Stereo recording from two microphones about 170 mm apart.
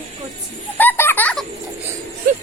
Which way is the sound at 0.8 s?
10° left (ahead or behind).